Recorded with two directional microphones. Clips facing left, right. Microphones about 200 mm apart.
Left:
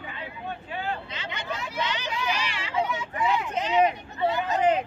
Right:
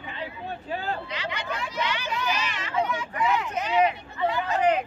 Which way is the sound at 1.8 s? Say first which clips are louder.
Right 1 dB; 20° left (ahead or behind).